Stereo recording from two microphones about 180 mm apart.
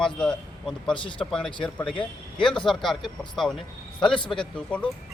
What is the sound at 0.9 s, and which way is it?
Speech, 30° left (ahead or behind).